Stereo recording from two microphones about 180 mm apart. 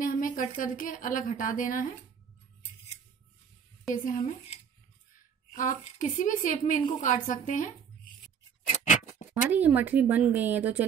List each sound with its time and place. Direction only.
0.0 s a woman's voice: 50° left (ahead or behind)
3.9 s a woman's voice: 45° left (ahead or behind)
5.5 s a woman's voice: 45° left (ahead or behind)
8.7 s a sound: 45° left (ahead or behind)
9.3 s speech: 10° right (ahead or behind)